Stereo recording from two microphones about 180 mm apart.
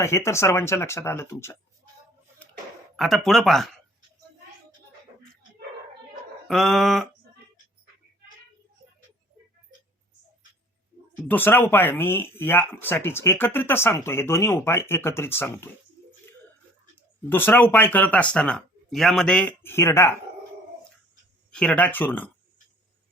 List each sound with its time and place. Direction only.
0.0 s speech: 15° left (ahead or behind)
2.9 s speech: centre (ahead or behind)
6.5 s speech: centre (ahead or behind)
11.3 s speech: 10° left (ahead or behind)
17.2 s speech: 10° left (ahead or behind)
21.5 s speech: 5° left (ahead or behind)